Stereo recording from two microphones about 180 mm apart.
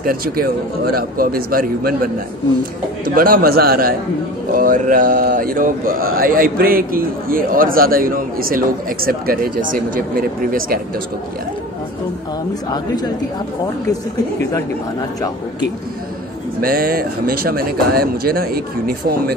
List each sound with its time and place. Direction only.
0.0 s speech: 55° right (ahead or behind)
3.2 s speech: 55° right (ahead or behind)
16.6 s speech: 55° right (ahead or behind)